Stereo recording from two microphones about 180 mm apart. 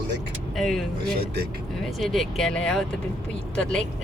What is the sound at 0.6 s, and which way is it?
Speech, centre (ahead or behind).